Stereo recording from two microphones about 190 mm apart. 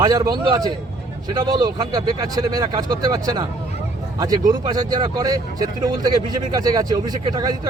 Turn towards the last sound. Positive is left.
turn(degrees=-20)  # may be behind; listen again after turning